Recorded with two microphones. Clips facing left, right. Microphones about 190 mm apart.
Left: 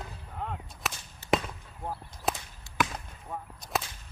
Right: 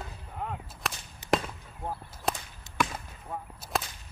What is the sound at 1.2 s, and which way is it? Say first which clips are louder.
Basketball bounce: even; 15° right (ahead or behind).